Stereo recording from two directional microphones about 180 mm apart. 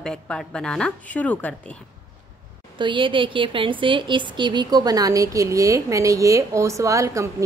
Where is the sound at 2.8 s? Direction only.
25° right (ahead or behind).